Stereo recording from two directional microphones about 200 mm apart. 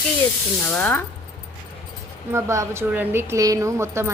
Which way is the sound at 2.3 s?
15° right (ahead or behind).